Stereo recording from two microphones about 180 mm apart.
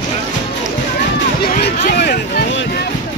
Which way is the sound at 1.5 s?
65° left (ahead or behind).